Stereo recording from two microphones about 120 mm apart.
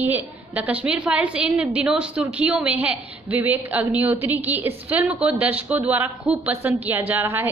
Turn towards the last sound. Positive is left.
turn(degrees=-20)  # may be behind; listen again after turning